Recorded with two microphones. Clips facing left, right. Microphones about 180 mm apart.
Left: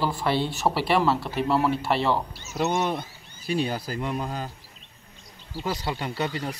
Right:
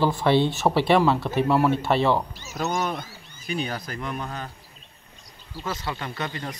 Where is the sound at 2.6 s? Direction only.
30° left (ahead or behind).